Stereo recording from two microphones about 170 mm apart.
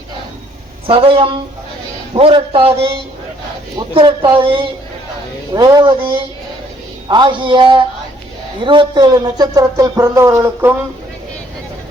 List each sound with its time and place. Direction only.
0.9 s a man's voice: 30° right (ahead or behind); by 10.8 s 15° right (ahead or behind)